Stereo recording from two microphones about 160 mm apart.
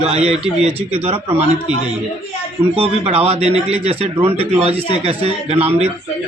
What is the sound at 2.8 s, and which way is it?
Speech, 40° right (ahead or behind).